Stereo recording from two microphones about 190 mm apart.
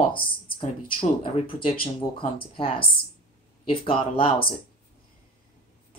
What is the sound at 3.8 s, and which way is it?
Speech, 30° left (ahead or behind).